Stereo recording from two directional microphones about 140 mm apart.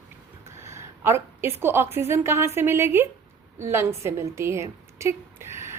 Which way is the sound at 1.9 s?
20° right (ahead or behind).